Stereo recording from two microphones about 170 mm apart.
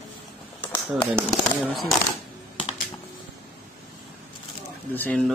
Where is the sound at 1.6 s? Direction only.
Centre (ahead or behind).